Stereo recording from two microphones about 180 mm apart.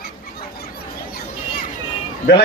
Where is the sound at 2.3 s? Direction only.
65° left (ahead or behind).